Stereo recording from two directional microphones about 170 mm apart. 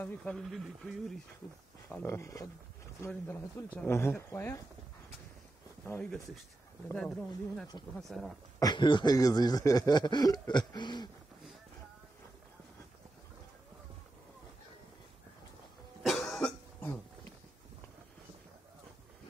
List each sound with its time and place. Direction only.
0.0 s speech: 5° left (ahead or behind)
1.9 s a man's voice: 15° left (ahead or behind)
5.9 s a man's voice: 5° left (ahead or behind)
7.7 s speech: 25° left (ahead or behind)
8.1 s speech: centre (ahead or behind)
8.5 s speech: 25° left (ahead or behind)
16.0 s cough: centre (ahead or behind)